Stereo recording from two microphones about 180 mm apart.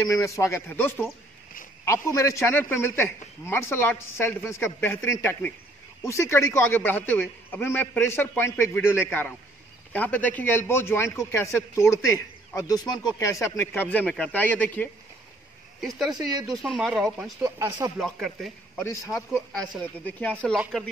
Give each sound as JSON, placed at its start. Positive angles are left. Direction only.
{"t": 0.0, "sound": "a man's voice", "side_deg": 15}
{"t": 16.2, "sound": "speech", "side_deg": -20}
{"t": 16.6, "sound": "speech", "side_deg": 0}
{"t": 17.2, "sound": "speech", "side_deg": -15}
{"t": 17.9, "sound": "speech", "side_deg": 0}
{"t": 18.8, "sound": "a man's voice", "side_deg": 15}